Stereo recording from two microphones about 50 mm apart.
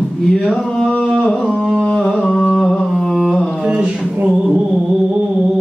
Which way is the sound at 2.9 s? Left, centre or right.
Centre.